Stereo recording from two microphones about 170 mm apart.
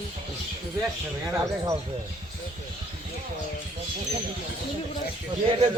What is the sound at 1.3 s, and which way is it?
Speech, 20° right (ahead or behind).